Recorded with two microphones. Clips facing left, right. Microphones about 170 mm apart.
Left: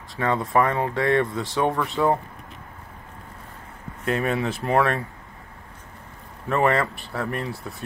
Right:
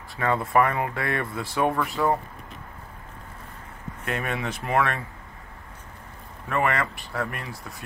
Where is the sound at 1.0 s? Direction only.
25° left (ahead or behind).